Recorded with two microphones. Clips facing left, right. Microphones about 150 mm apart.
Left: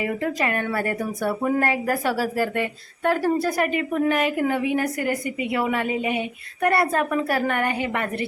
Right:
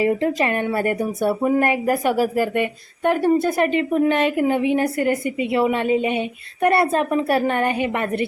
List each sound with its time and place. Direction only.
0.0 s speech: 25° right (ahead or behind)